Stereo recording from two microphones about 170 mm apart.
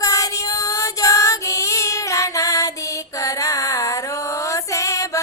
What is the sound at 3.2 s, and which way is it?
Music, 20° left (ahead or behind).